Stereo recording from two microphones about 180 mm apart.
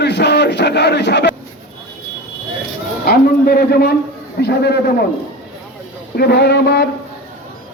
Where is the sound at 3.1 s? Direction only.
55° left (ahead or behind).